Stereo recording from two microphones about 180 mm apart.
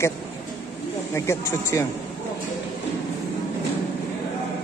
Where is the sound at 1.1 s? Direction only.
15° left (ahead or behind).